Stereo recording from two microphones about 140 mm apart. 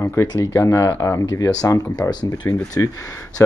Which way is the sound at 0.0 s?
20° left (ahead or behind).